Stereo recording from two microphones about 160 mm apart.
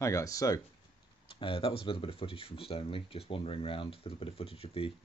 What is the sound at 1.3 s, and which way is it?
Speech, 35° left (ahead or behind).